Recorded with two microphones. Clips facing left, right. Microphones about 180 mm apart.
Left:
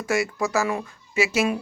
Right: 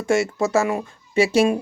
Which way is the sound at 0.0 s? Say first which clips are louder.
Right 4 dB; 25° right (ahead or behind).